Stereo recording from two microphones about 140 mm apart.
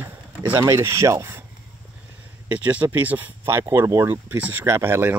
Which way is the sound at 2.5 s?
10° right (ahead or behind).